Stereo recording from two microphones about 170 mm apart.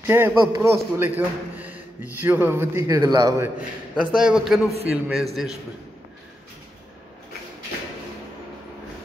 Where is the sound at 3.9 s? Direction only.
5° right (ahead or behind).